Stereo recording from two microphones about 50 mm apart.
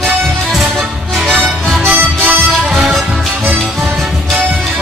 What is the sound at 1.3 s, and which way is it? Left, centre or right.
Music, right.